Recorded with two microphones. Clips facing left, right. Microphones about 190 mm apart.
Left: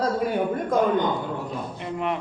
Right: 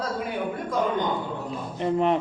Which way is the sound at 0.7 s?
50° left (ahead or behind).